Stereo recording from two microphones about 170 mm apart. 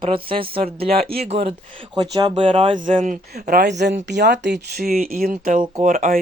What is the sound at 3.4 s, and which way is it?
Speech, 70° right (ahead or behind).